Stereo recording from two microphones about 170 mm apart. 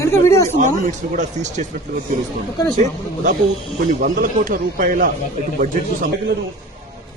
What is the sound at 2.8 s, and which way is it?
Speech, 45° right (ahead or behind).